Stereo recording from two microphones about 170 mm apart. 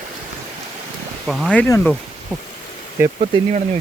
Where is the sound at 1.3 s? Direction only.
Centre (ahead or behind).